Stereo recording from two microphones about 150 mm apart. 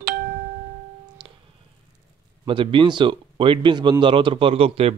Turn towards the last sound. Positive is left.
turn(degrees=-40)  # may be behind; listen again after turning